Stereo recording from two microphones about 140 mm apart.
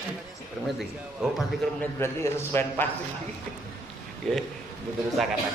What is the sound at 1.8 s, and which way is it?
A man's voice, 15° left (ahead or behind).